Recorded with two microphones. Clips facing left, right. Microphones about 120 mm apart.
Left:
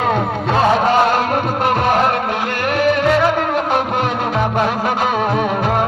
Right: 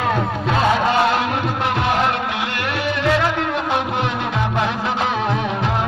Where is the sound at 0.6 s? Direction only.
45° left (ahead or behind).